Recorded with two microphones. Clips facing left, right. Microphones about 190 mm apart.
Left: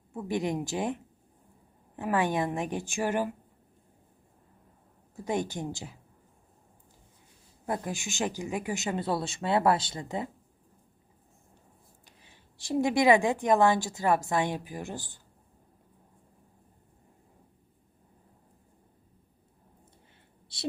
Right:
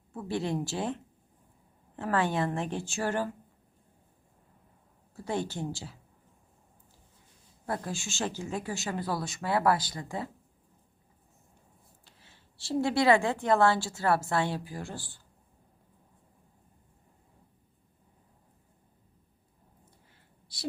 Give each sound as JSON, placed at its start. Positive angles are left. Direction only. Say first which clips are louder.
{"t": 0.1, "sound": "speech", "louder": "left 2 dB", "side_deg": 15}
{"t": 5.1, "sound": "speech", "louder": "left 2 dB", "side_deg": 15}
{"t": 7.7, "sound": "speech", "louder": "left 2 dB", "side_deg": 15}
{"t": 12.0, "sound": "speech", "louder": "left 2 dB", "side_deg": 15}
{"t": 20.5, "sound": "a sound", "louder": "left 3 dB", "side_deg": 25}